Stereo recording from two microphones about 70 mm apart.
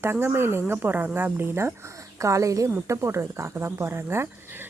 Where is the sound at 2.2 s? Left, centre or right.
Right.